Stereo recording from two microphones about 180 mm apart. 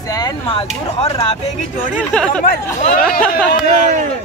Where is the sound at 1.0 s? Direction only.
40° left (ahead or behind).